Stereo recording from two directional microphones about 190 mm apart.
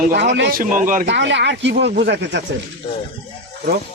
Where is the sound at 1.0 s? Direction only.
70° right (ahead or behind).